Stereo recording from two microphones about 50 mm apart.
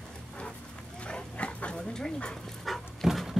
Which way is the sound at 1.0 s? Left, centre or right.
Left.